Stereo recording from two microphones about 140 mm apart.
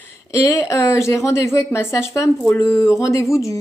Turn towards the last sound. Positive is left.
turn(degrees=20)  # may be behind; listen again after turning